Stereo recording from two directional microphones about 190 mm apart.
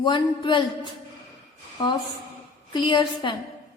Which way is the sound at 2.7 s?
25° left (ahead or behind).